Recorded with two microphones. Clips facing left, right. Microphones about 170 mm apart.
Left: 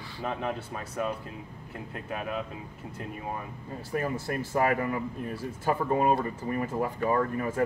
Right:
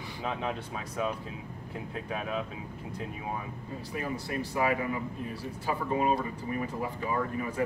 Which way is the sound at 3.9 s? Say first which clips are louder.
Left 4 dB; 45° left (ahead or behind).